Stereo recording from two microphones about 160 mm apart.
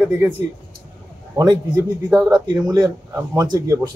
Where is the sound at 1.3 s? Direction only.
20° right (ahead or behind).